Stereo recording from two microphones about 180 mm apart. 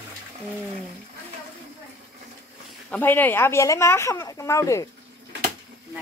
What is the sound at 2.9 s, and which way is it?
Speech, 10° left (ahead or behind).